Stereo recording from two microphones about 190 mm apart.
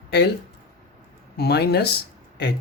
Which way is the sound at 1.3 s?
60° left (ahead or behind).